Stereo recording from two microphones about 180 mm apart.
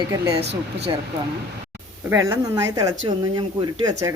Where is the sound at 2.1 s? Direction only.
15° right (ahead or behind).